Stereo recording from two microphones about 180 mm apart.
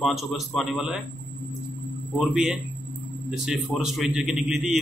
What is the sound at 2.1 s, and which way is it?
A man's voice, 5° right (ahead or behind).